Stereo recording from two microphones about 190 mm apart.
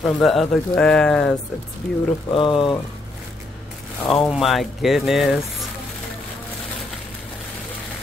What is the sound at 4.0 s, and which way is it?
Speech, centre (ahead or behind).